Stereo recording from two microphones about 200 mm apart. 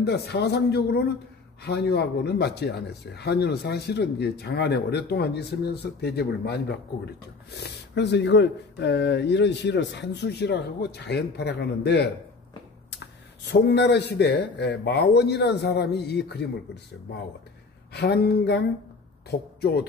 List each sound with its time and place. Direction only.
0.0 s speech: 55° left (ahead or behind)
7.9 s speech: 60° left (ahead or behind)
17.9 s speech: 55° left (ahead or behind)